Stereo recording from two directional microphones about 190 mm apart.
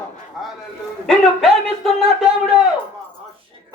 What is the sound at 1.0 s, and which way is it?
Speech, centre (ahead or behind).